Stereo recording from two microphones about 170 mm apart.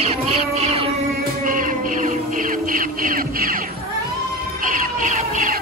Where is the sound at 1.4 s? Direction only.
55° right (ahead or behind).